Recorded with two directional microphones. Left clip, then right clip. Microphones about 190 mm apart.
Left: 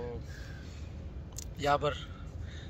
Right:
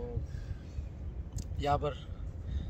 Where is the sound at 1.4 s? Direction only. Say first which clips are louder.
Left 3 dB; 15° right (ahead or behind).